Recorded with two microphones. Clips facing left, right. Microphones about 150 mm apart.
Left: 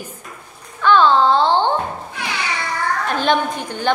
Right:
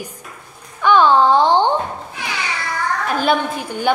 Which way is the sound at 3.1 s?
5° right (ahead or behind).